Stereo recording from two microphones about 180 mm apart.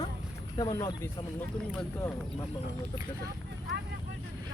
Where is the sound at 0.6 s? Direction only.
20° left (ahead or behind).